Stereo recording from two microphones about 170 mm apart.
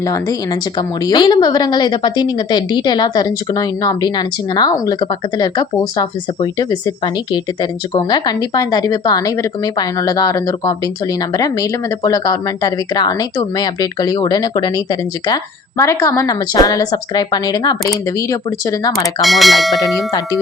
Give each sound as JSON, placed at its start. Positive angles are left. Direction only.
{"t": 0.0, "sound": "a woman's voice", "side_deg": 20}
{"t": 19.2, "sound": "speech", "side_deg": 0}